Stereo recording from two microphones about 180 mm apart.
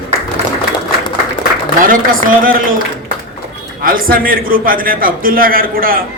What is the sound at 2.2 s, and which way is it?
Speech, 50° right (ahead or behind).